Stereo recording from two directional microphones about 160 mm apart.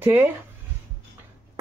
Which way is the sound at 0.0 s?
10° right (ahead or behind).